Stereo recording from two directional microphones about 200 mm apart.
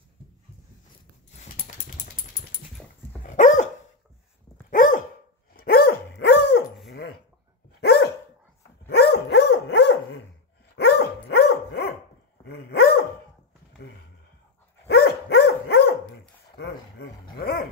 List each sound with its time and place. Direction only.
3.3 s dog: 40° left (ahead or behind)
4.6 s dog: 40° left (ahead or behind)
14.9 s dog: 55° left (ahead or behind)